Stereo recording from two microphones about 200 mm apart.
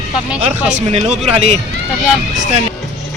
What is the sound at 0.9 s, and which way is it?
Speech, 35° right (ahead or behind).